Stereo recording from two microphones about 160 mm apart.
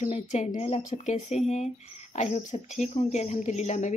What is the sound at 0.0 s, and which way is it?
Speech, 45° left (ahead or behind).